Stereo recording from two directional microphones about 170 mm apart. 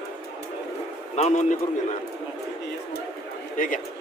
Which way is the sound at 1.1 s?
45° left (ahead or behind).